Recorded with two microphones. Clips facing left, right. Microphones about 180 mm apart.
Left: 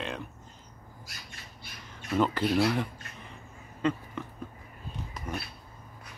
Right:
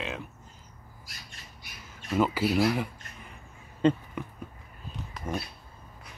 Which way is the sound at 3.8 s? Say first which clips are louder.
Right 5 dB; 30° right (ahead or behind).